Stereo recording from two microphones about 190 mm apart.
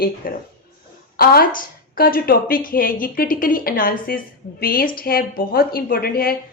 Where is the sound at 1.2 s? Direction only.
50° left (ahead or behind).